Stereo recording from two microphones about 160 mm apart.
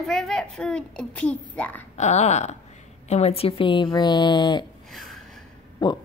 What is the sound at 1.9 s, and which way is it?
A woman's voice, 45° left (ahead or behind).